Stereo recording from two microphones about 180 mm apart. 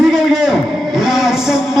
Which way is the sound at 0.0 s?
Centre (ahead or behind).